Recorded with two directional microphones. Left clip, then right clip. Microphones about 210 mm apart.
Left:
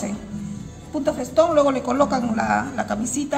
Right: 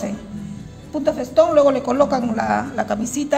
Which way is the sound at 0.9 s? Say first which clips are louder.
Right 3 dB; 15° right (ahead or behind).